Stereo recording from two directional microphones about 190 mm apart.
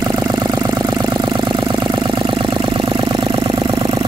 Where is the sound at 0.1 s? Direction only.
20° right (ahead or behind).